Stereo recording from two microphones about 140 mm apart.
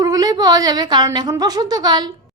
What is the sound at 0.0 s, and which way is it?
Speech, 25° right (ahead or behind).